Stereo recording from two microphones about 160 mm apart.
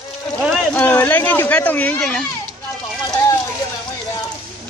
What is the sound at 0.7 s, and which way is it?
Speech, 10° left (ahead or behind).